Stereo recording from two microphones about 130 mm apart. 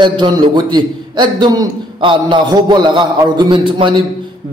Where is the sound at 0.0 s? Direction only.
35° right (ahead or behind).